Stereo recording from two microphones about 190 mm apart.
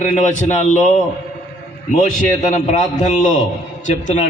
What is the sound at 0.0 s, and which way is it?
A man's voice, 40° left (ahead or behind).